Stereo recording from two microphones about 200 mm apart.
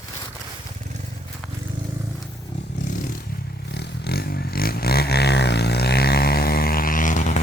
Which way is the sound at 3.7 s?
55° left (ahead or behind).